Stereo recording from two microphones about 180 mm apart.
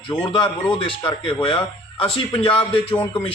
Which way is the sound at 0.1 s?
25° left (ahead or behind).